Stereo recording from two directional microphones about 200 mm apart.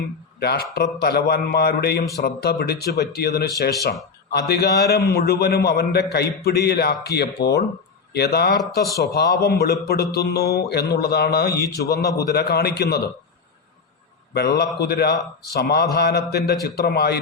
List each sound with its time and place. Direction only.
0.3 s a man's voice: 50° left (ahead or behind)
11.6 s a man's voice: 15° left (ahead or behind)
12.1 s a man's voice: 55° left (ahead or behind)
14.3 s a man's voice: 55° left (ahead or behind)